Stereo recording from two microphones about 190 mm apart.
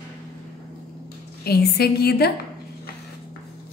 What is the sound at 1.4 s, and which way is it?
Speech, 55° left (ahead or behind).